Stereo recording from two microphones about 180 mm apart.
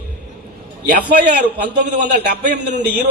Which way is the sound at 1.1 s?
65° right (ahead or behind).